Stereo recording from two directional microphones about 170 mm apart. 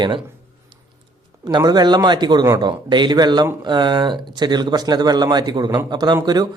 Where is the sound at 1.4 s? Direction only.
25° right (ahead or behind).